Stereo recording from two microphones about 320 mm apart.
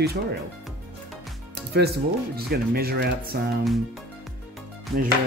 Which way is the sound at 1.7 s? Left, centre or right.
Right.